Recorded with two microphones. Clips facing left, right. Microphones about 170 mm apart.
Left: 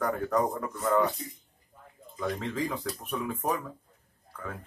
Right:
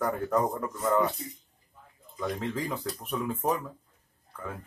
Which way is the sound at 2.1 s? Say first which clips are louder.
Even; 15° right (ahead or behind).